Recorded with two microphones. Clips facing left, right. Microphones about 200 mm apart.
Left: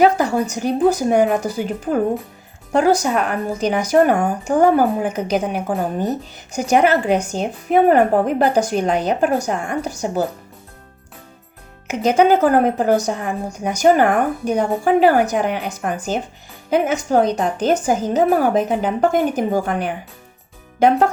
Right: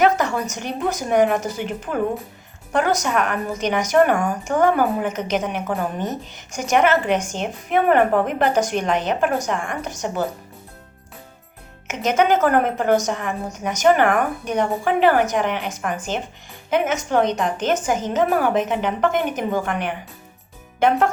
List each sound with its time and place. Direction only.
0.0 s a woman's voice: 35° left (ahead or behind)
11.9 s a woman's voice: 35° left (ahead or behind)